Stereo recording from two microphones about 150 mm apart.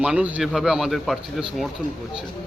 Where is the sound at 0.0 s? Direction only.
10° right (ahead or behind).